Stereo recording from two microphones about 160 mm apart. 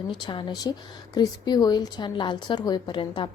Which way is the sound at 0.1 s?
30° left (ahead or behind).